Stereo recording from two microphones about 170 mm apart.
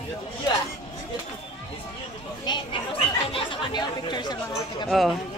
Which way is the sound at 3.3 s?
25° left (ahead or behind).